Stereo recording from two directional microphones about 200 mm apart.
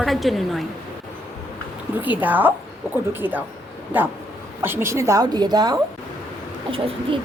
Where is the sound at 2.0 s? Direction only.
10° right (ahead or behind); by 7.2 s 25° right (ahead or behind).